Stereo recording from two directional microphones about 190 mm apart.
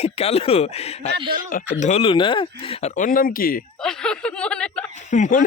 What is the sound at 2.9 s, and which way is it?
Speech, 45° left (ahead or behind).